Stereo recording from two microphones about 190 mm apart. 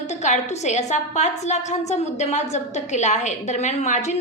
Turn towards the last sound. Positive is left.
turn(degrees=40)  # may be behind; listen again after turning